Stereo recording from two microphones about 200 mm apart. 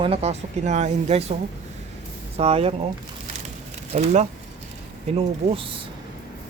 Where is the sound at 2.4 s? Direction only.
30° right (ahead or behind).